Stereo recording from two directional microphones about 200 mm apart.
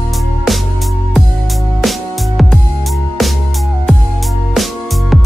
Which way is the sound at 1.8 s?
Centre (ahead or behind).